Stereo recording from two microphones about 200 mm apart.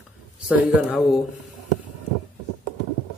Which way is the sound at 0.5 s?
5° right (ahead or behind).